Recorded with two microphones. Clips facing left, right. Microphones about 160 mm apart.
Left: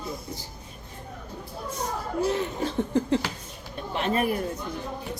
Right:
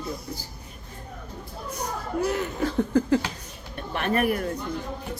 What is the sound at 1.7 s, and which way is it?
Speech, 25° left (ahead or behind).